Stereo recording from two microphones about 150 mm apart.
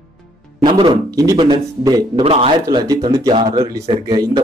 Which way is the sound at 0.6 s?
30° right (ahead or behind).